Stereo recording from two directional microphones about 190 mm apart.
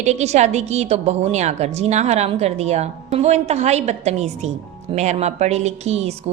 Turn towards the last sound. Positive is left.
turn(degrees=-35)  # may be behind; listen again after turning